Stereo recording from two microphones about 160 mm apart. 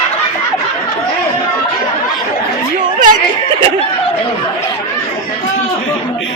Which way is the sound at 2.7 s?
55° right (ahead or behind).